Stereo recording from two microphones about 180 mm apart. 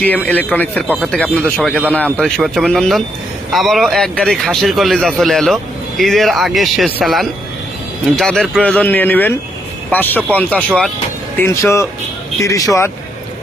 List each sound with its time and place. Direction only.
0.0 s a man's voice: 10° left (ahead or behind)
11.3 s speech: 15° left (ahead or behind)